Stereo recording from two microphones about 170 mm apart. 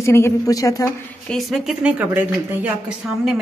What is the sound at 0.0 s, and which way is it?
Speech, 15° left (ahead or behind).